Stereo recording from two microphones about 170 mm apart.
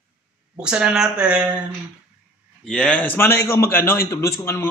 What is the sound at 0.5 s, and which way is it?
Speech, 5° right (ahead or behind).